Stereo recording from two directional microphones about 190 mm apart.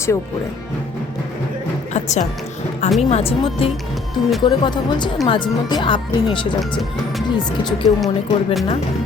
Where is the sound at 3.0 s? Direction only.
35° left (ahead or behind).